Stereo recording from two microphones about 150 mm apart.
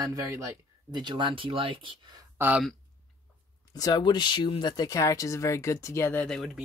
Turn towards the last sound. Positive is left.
turn(degrees=5)  # may be behind; listen again after turning